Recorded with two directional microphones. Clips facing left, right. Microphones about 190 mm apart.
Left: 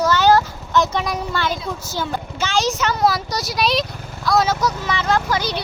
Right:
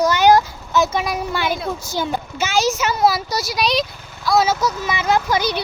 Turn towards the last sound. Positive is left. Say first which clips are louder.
# right 2 dB
turn(degrees=-15)  # may be behind; listen again after turning